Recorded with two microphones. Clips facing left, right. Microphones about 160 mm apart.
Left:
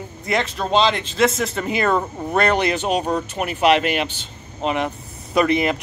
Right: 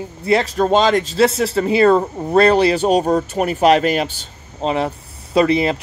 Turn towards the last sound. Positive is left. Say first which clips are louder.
# right 3 dB
turn(degrees=-30)  # may be behind; listen again after turning